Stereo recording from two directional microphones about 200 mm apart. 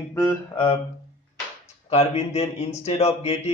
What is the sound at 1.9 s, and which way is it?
Speech, 30° left (ahead or behind).